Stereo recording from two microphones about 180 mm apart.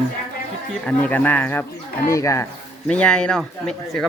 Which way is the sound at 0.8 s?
10° left (ahead or behind).